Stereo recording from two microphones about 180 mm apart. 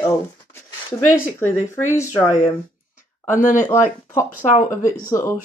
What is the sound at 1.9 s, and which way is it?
Speech, 15° left (ahead or behind).